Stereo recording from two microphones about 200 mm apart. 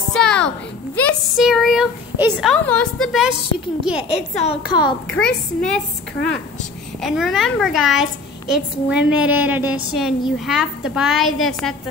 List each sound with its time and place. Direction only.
0.1 s a sound: 5° left (ahead or behind)
0.9 s speech: 5° left (ahead or behind)
2.5 s a child's voice: 5° left (ahead or behind)
4.4 s a woman's voice: 30° left (ahead or behind)
5.0 s a child's voice: 5° left (ahead or behind)
7.0 s a child's voice: centre (ahead or behind)